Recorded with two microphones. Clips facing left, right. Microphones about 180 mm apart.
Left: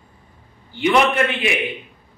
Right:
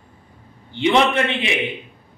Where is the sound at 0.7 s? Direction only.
25° right (ahead or behind).